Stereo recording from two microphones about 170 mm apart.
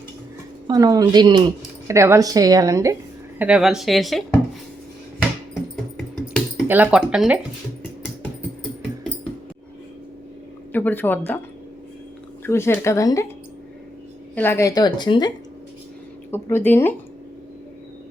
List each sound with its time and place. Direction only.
0.7 s a woman's voice: 20° right (ahead or behind)
3.3 s speech: 5° right (ahead or behind)
6.7 s speech: 10° right (ahead or behind)
10.7 s speech: 10° left (ahead or behind)
12.5 s speech: 15° left (ahead or behind)
14.3 s speech: 15° left (ahead or behind)
16.3 s speech: 15° left (ahead or behind)